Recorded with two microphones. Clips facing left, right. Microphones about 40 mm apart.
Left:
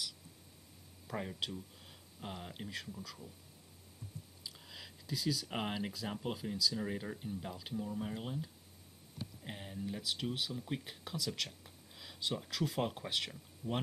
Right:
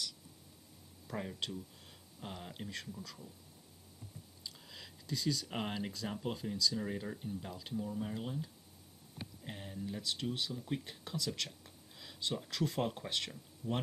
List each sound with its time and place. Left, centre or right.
1.0 s speech: centre
4.4 s a sound: centre
6.1 s speech: centre